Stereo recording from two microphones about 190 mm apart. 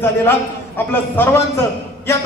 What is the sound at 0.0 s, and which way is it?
A man's voice, 10° left (ahead or behind).